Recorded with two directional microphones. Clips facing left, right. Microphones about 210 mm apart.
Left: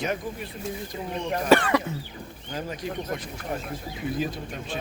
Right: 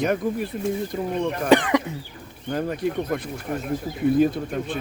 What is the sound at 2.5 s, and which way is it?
Speech, 55° right (ahead or behind).